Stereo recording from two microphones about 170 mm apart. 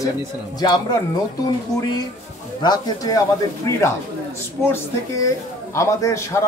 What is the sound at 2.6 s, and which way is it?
A man's voice, 25° left (ahead or behind).